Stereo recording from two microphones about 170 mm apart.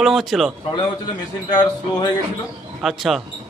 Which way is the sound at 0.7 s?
25° left (ahead or behind).